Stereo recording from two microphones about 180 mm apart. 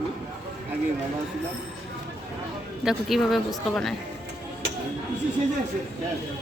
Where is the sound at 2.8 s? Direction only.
Centre (ahead or behind).